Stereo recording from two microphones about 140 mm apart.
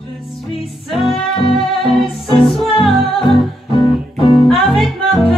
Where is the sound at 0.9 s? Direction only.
Centre (ahead or behind).